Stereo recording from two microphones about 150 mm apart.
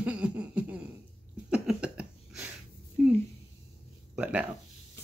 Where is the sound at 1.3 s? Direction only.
5° right (ahead or behind).